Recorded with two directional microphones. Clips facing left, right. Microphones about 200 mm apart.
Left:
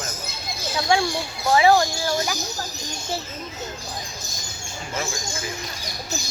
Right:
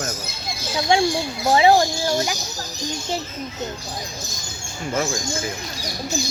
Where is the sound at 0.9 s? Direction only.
20° right (ahead or behind).